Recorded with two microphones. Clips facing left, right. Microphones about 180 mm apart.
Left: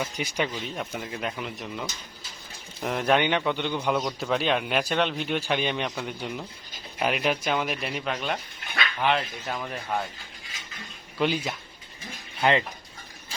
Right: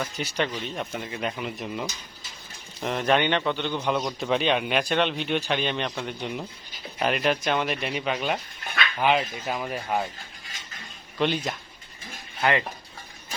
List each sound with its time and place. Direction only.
0.0 s a man's voice: 10° left (ahead or behind)
3.9 s a man's voice: centre (ahead or behind)
11.2 s a man's voice: 5° left (ahead or behind)
12.4 s speech: 20° left (ahead or behind)